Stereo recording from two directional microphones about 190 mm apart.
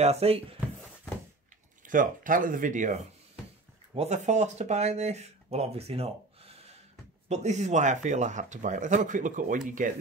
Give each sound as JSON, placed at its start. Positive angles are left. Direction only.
{"t": 0.0, "sound": "speech", "side_deg": -35}
{"t": 1.9, "sound": "speech", "side_deg": -45}